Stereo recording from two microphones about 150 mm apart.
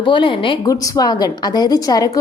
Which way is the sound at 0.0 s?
35° left (ahead or behind).